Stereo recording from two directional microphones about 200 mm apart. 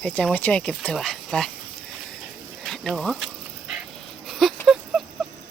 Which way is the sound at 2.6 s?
Centre (ahead or behind).